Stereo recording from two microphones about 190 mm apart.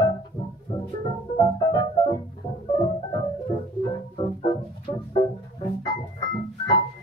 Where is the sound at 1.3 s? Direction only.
20° left (ahead or behind).